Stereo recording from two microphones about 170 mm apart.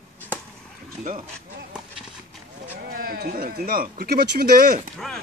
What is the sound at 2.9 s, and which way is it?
Speech, 60° right (ahead or behind).